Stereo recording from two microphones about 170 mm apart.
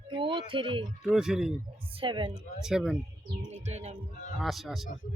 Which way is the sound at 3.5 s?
40° right (ahead or behind).